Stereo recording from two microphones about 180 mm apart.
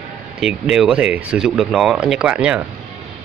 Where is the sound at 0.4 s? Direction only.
Centre (ahead or behind).